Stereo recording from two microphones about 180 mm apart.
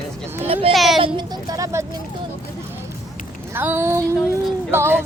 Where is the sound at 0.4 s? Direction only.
30° right (ahead or behind).